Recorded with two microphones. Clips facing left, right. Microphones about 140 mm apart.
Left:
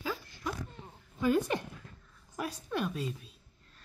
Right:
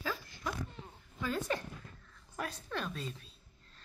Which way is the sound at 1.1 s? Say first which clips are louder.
Left 7 dB; 15° left (ahead or behind).